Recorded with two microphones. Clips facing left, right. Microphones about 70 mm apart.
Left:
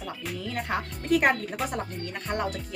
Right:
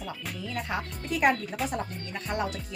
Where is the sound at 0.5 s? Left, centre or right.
Left.